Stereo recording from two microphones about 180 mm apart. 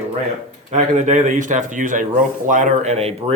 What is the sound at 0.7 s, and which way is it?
Speech, 40° right (ahead or behind).